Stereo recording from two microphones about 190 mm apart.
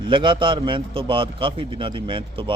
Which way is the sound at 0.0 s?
25° right (ahead or behind).